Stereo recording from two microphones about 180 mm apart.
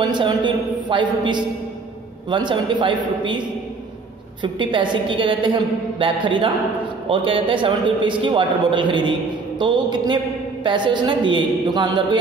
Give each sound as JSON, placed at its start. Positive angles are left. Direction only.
{"t": 0.0, "sound": "a man's voice", "side_deg": -25}